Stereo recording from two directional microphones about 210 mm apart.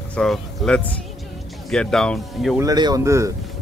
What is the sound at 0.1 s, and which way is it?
Speech, centre (ahead or behind).